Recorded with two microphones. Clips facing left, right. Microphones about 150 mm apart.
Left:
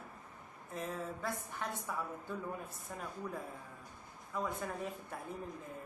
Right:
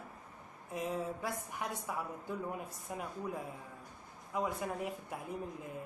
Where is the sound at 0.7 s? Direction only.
15° right (ahead or behind).